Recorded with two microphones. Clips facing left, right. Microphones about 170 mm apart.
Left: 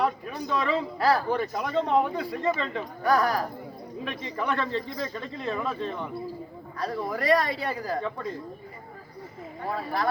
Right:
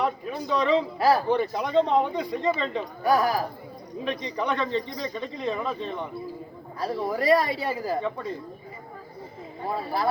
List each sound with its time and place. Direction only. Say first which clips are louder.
0.0 s a man's voice: even; centre (ahead or behind)
7.1 s a man's voice: right 2 dB; 5° right (ahead or behind)
9.6 s speech: right 2 dB; 25° right (ahead or behind)